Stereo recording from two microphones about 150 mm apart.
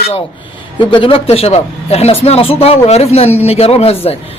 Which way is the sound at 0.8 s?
35° left (ahead or behind).